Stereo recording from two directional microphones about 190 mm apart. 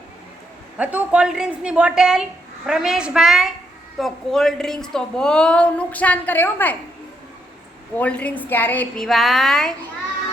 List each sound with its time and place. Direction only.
0.8 s speech: 5° right (ahead or behind); by 6.7 s 10° left (ahead or behind)
7.9 s a woman's voice: 5° left (ahead or behind)